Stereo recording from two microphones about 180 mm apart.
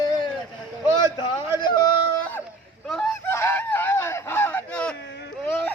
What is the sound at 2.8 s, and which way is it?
Goose, 5° left (ahead or behind).